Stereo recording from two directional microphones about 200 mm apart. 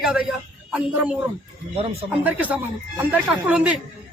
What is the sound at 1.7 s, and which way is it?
Speech, 30° right (ahead or behind).